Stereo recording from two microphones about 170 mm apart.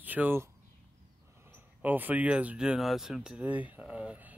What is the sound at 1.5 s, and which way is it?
Speech, 10° right (ahead or behind).